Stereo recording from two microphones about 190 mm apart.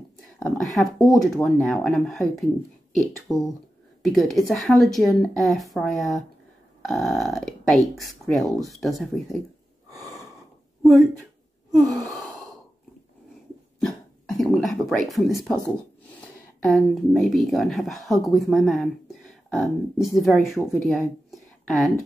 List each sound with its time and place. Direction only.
0.4 s speech: centre (ahead or behind)
3.3 s speech: 15° left (ahead or behind)
4.0 s speech: centre (ahead or behind)
10.8 s a sound: centre (ahead or behind)
11.7 s gasp: centre (ahead or behind)
14.4 s speech: centre (ahead or behind)
16.6 s speech: centre (ahead or behind)